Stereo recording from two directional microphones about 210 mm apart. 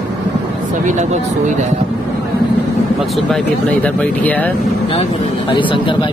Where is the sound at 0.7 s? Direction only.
35° right (ahead or behind).